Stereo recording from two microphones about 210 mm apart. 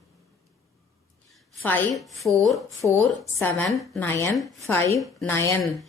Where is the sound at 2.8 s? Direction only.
10° right (ahead or behind).